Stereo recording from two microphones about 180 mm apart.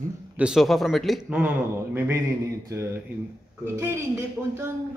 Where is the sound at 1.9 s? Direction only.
10° right (ahead or behind).